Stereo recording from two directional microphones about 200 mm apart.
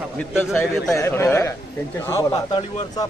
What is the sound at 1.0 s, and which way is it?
Speech, 15° left (ahead or behind).